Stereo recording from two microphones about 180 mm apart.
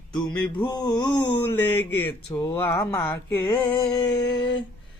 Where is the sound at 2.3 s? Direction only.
25° left (ahead or behind).